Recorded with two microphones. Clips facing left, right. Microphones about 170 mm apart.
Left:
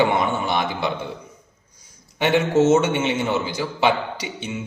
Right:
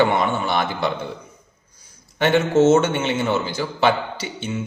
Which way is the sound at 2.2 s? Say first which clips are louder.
Right 2 dB; 15° left (ahead or behind).